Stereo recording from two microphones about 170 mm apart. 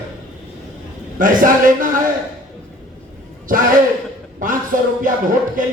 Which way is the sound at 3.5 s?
55° right (ahead or behind).